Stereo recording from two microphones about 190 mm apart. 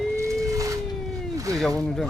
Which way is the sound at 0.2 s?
15° right (ahead or behind).